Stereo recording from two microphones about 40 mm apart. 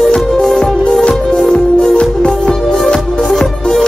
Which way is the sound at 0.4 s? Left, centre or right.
Centre.